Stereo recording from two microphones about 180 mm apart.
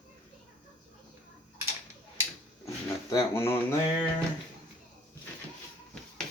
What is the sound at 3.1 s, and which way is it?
Speech, 15° left (ahead or behind).